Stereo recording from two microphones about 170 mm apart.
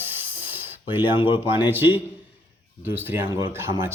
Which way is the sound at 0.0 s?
10° right (ahead or behind).